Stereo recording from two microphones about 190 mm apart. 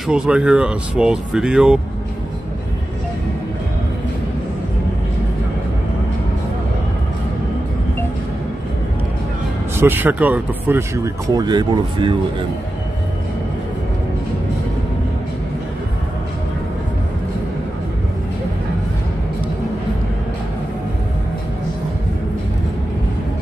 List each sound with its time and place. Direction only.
0.1 s speech: 5° right (ahead or behind)
9.8 s speech: 10° right (ahead or behind)
11.2 s speech: 20° right (ahead or behind)